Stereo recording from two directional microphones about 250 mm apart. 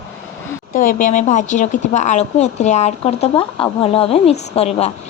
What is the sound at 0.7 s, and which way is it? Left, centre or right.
A woman's voice, left.